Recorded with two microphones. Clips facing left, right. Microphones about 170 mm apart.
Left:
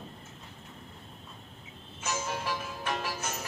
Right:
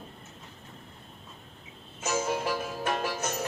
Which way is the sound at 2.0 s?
45° right (ahead or behind).